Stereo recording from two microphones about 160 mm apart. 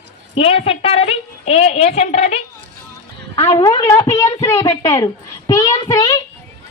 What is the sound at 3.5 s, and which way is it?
Speech, 20° left (ahead or behind).